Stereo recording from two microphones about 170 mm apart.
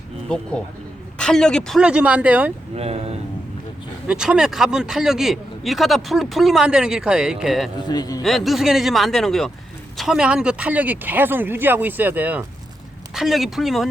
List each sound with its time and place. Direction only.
0.3 s a man's voice: 5° left (ahead or behind)
2.7 s speech: 40° right (ahead or behind)
4.0 s a man's voice: 5° right (ahead or behind)
7.9 s a man's voice: 25° left (ahead or behind)
8.2 s a man's voice: centre (ahead or behind)